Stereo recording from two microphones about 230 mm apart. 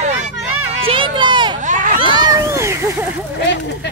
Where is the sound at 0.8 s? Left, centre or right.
Right.